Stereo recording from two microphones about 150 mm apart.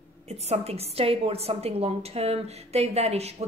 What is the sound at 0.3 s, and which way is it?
A woman's voice, 45° right (ahead or behind).